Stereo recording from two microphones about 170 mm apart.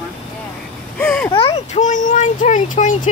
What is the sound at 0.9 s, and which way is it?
Speech, 5° left (ahead or behind).